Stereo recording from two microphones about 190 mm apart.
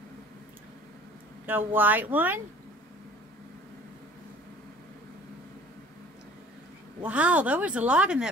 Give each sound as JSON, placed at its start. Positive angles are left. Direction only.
{"t": 1.4, "sound": "speech", "side_deg": -10}
{"t": 7.0, "sound": "speech", "side_deg": -5}